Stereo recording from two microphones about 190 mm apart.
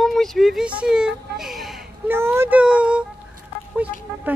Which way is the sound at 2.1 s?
15° right (ahead or behind).